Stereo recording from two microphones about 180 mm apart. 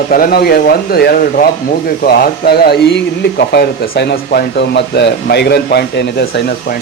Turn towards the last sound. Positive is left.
turn(degrees=65)  # may be behind; listen again after turning